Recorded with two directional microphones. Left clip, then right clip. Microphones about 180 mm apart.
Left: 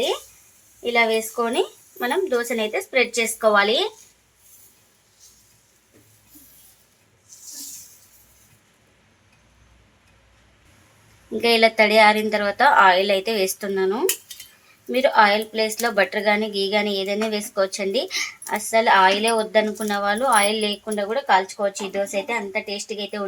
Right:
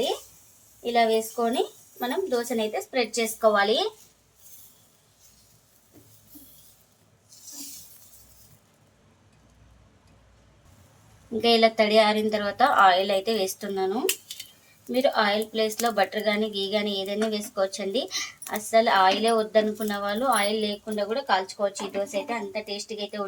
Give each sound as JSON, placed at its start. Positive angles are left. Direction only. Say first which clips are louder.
{"t": 0.9, "sound": "speech", "louder": "left 3 dB", "side_deg": 40}
{"t": 11.3, "sound": "a woman's voice", "louder": "left 4 dB", "side_deg": 20}
{"t": 14.9, "sound": "a woman's voice", "louder": "left 6 dB", "side_deg": 25}